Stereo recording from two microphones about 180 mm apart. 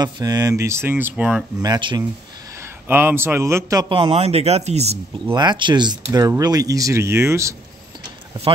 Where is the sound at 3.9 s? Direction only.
30° right (ahead or behind).